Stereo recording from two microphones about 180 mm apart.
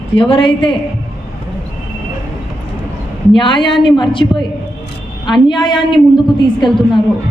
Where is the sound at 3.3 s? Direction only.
25° left (ahead or behind).